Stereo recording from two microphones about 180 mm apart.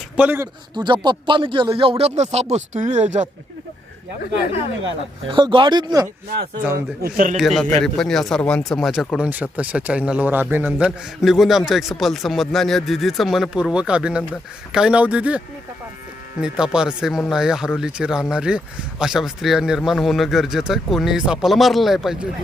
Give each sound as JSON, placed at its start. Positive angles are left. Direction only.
{"t": 0.2, "sound": "speech", "side_deg": -10}
{"t": 1.0, "sound": "speech", "side_deg": -25}
{"t": 5.3, "sound": "speech", "side_deg": -25}
{"t": 6.7, "sound": "speech", "side_deg": -55}
{"t": 7.3, "sound": "speech", "side_deg": 0}
{"t": 16.4, "sound": "speech", "side_deg": -5}